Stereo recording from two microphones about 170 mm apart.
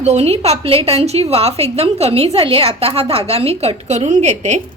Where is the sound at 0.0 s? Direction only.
40° right (ahead or behind).